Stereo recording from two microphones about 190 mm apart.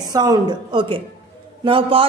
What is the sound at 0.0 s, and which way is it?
A woman's voice, 20° right (ahead or behind).